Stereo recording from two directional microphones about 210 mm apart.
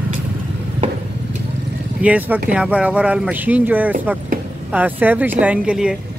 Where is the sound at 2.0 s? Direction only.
5° right (ahead or behind).